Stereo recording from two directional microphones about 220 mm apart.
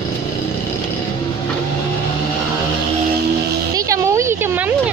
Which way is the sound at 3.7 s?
15° right (ahead or behind).